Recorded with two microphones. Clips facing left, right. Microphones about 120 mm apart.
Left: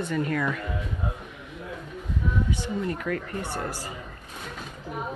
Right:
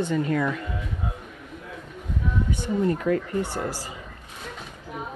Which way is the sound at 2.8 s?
25° right (ahead or behind).